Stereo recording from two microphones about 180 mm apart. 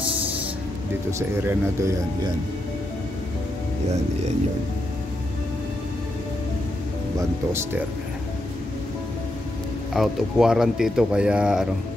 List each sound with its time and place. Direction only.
1.4 s speech: 15° right (ahead or behind)
9.9 s speech: 5° right (ahead or behind)